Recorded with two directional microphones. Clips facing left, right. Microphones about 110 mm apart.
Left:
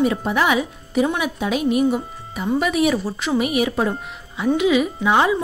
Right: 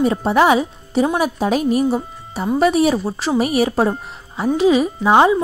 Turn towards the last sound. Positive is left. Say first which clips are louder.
# right 4 dB
turn(degrees=-30)  # may be behind; listen again after turning